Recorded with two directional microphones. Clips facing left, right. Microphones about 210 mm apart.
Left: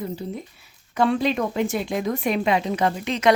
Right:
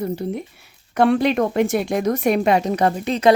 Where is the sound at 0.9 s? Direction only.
55° right (ahead or behind); by 3.3 s 35° right (ahead or behind).